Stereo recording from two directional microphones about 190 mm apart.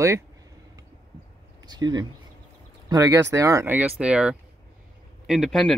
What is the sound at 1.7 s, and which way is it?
Speech, 20° right (ahead or behind).